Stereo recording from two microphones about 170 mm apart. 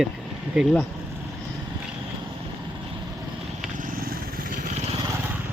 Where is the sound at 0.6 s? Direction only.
5° right (ahead or behind).